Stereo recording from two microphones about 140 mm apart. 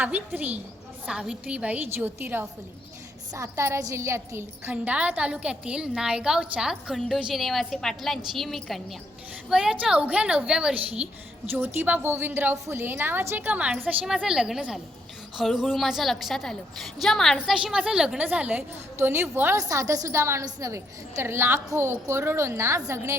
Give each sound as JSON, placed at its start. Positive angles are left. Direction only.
{"t": 0.3, "sound": "a woman's voice", "side_deg": -15}